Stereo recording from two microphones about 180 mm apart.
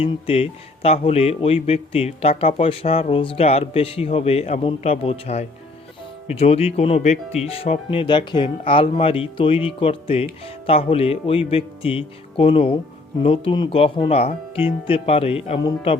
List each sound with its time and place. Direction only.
0.0 s speech: 35° left (ahead or behind)